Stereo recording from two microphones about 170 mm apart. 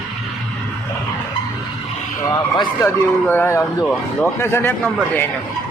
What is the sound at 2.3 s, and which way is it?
Speech, 20° left (ahead or behind).